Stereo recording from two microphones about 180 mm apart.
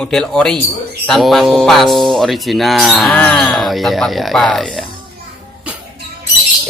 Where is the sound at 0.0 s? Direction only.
5° left (ahead or behind).